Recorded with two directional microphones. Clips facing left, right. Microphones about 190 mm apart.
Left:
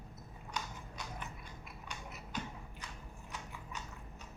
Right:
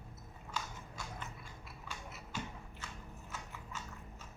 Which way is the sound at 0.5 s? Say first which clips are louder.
Even; 20° left (ahead or behind).